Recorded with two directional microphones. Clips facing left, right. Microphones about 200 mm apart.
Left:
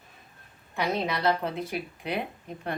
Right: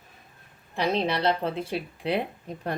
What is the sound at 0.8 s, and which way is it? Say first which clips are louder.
A woman's voice: right 3 dB; 30° right (ahead or behind).